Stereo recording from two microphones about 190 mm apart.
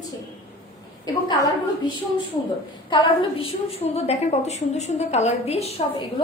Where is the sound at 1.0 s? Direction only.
20° left (ahead or behind).